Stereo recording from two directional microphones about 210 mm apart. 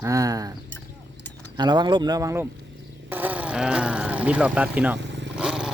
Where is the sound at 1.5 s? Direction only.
20° right (ahead or behind).